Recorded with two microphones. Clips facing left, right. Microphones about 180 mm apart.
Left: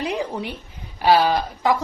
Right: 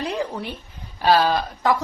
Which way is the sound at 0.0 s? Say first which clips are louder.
Left 1 dB; 15° left (ahead or behind).